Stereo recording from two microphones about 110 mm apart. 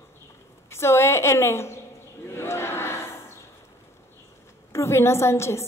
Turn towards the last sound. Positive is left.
turn(degrees=25)  # may be behind; listen again after turning